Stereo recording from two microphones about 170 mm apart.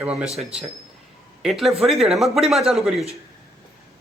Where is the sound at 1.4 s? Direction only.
Centre (ahead or behind).